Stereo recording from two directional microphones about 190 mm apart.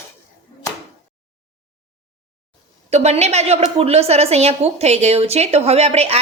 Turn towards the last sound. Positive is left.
turn(degrees=-35)  # may be behind; listen again after turning